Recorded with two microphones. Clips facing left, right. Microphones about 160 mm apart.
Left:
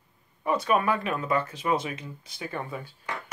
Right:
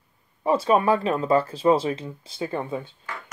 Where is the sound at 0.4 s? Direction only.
30° right (ahead or behind).